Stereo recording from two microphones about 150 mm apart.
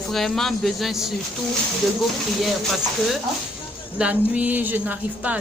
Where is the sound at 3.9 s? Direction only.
10° right (ahead or behind).